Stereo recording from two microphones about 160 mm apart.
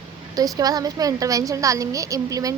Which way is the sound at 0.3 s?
20° right (ahead or behind).